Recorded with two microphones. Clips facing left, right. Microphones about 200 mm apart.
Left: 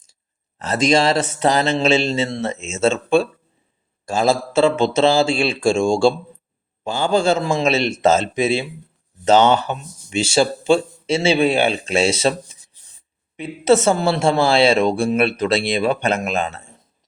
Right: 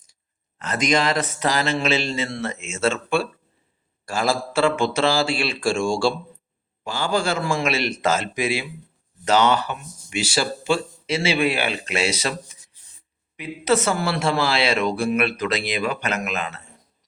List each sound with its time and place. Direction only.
0.6 s speech: 30° left (ahead or behind)